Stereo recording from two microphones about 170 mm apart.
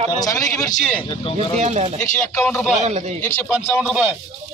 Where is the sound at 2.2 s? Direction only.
5° left (ahead or behind).